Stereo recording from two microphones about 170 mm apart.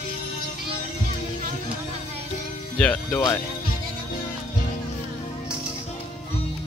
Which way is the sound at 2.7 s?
10° left (ahead or behind).